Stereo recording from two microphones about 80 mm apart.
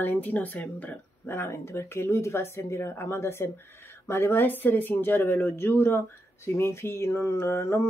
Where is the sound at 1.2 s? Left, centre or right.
Left.